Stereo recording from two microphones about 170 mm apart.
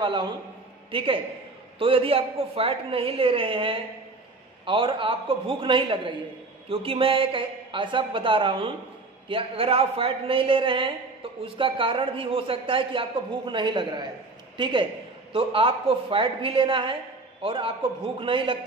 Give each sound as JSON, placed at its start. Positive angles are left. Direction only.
{"t": 0.0, "sound": "a woman's voice", "side_deg": -30}